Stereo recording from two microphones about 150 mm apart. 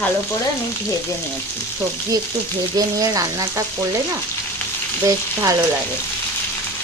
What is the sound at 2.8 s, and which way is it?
Speech, 25° right (ahead or behind).